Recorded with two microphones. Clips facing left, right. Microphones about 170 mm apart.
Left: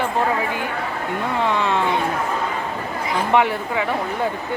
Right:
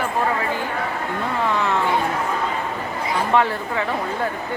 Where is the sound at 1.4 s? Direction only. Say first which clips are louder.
Left 1 dB; 20° left (ahead or behind).